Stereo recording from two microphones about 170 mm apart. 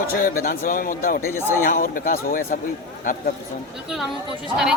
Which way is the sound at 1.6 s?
55° left (ahead or behind).